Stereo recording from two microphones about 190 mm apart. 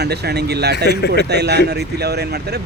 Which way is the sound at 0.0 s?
60° right (ahead or behind).